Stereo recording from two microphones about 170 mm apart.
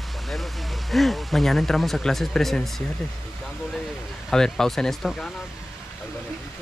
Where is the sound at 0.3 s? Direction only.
Centre (ahead or behind).